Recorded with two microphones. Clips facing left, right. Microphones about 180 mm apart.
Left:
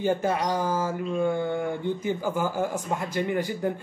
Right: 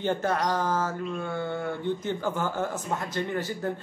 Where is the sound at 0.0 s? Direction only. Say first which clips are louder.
Left 2 dB; 10° left (ahead or behind).